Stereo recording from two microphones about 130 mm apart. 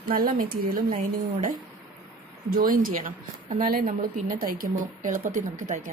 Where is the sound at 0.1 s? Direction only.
90° right.